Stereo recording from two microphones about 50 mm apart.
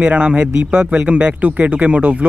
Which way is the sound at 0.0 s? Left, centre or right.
Right.